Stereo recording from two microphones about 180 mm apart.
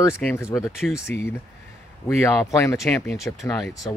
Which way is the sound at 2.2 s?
15° left (ahead or behind).